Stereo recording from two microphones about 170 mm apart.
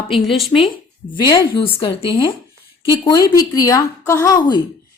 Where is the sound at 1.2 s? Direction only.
25° left (ahead or behind).